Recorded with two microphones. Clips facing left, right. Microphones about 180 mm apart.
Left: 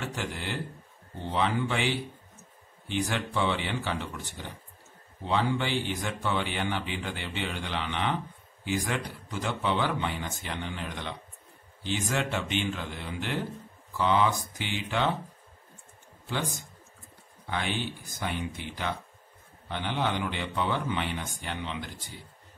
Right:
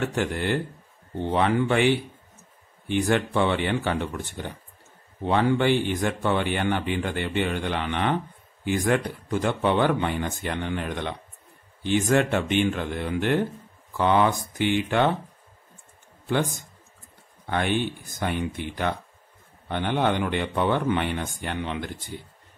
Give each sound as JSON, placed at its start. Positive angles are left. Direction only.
{"t": 0.0, "sound": "speech", "side_deg": -55}
{"t": 17.5, "sound": "speech", "side_deg": -55}